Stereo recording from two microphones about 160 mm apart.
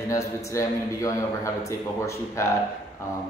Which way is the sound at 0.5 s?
20° left (ahead or behind).